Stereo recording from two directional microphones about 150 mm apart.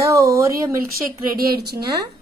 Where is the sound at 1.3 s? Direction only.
80° right.